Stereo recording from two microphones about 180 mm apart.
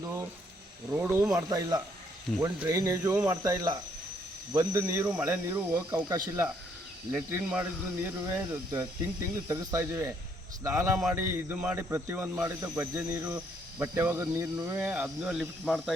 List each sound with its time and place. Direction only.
0.9 s speech: 5° right (ahead or behind)
1.3 s speech: 20° right (ahead or behind); by 16.0 s centre (ahead or behind)